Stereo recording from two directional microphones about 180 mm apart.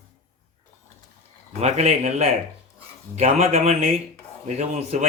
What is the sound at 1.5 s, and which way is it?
A man's voice, 40° right (ahead or behind).